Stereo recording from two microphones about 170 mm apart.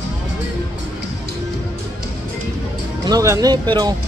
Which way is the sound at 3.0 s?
20° right (ahead or behind).